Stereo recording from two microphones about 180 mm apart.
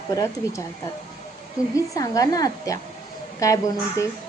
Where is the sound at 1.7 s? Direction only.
20° left (ahead or behind).